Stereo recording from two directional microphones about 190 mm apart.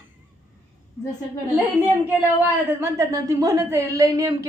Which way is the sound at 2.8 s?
15° right (ahead or behind).